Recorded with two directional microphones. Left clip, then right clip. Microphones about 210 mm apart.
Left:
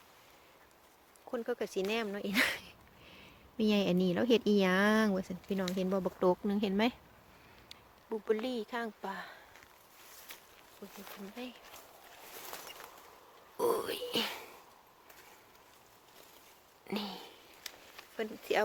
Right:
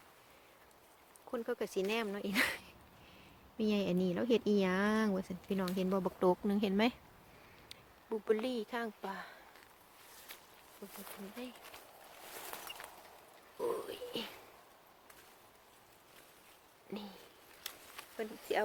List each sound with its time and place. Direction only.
1.3 s speech: 5° left (ahead or behind)
13.6 s speech: 35° left (ahead or behind)
16.9 s a sound: 30° left (ahead or behind)
18.2 s speech: 25° left (ahead or behind)